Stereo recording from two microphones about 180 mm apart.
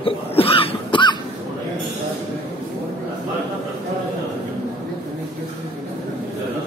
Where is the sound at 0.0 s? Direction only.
30° left (ahead or behind).